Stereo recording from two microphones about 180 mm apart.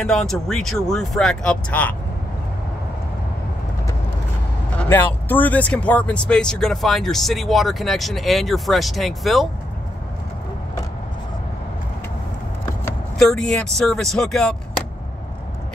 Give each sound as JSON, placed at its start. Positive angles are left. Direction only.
{"t": 0.0, "sound": "speech", "side_deg": 5}
{"t": 4.7, "sound": "speech", "side_deg": 10}
{"t": 13.2, "sound": "speech", "side_deg": 5}